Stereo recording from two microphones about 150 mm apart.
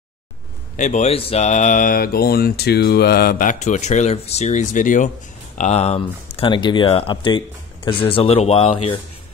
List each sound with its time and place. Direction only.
0.7 s speech: 50° left (ahead or behind)
5.6 s speech: 45° left (ahead or behind)